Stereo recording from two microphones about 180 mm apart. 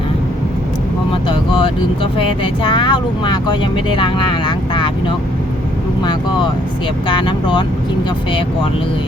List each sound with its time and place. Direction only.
2.1 s speech: 25° left (ahead or behind)